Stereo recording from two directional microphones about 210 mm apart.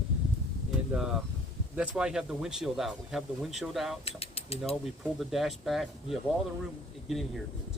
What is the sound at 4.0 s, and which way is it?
Speech, 25° left (ahead or behind).